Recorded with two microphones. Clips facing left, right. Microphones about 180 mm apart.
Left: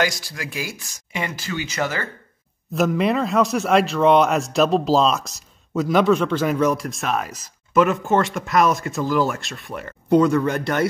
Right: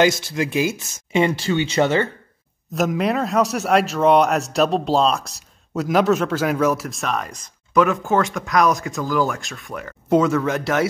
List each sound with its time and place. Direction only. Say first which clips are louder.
0.0 s speech: right 6 dB; 25° right (ahead or behind)
2.7 s speech: left 1 dB; centre (ahead or behind)